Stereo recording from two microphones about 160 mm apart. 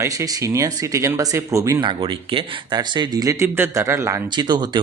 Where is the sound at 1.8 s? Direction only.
30° right (ahead or behind).